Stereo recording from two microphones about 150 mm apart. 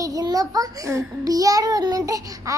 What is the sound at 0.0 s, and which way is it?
A child's voice, 25° right (ahead or behind).